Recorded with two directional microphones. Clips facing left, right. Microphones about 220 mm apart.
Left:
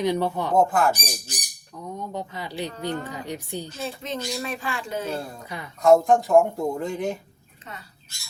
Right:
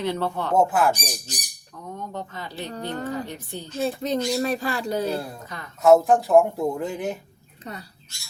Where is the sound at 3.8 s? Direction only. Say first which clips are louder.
Right 11 dB; 40° right (ahead or behind).